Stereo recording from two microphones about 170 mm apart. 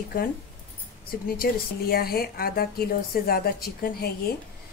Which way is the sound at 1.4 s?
65° left (ahead or behind).